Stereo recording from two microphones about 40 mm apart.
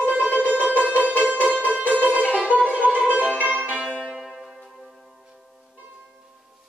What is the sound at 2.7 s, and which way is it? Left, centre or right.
Music, left.